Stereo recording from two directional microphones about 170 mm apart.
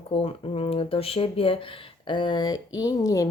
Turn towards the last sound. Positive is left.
turn(degrees=20)  # may be behind; listen again after turning